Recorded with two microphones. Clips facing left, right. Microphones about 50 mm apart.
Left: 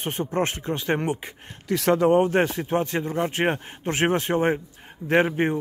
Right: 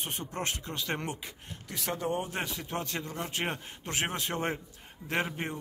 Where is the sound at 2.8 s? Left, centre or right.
Left.